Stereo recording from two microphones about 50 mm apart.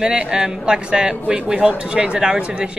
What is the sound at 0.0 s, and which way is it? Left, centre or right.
A man's voice, centre.